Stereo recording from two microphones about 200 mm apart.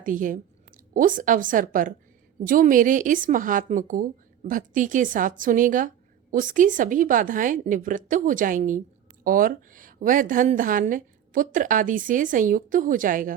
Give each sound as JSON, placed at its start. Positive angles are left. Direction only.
{"t": 0.0, "sound": "a woman's voice", "side_deg": -40}